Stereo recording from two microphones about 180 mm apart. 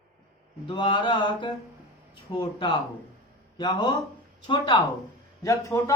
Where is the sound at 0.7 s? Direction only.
25° left (ahead or behind).